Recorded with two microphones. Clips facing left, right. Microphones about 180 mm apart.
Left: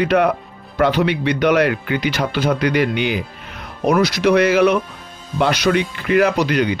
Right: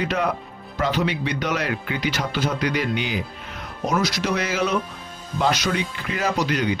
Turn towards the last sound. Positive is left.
turn(degrees=65)  # may be behind; listen again after turning